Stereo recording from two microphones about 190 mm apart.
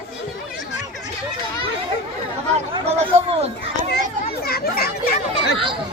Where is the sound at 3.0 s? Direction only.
30° right (ahead or behind).